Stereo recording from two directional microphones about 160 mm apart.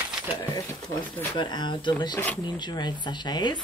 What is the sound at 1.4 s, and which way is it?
Speech, 30° left (ahead or behind).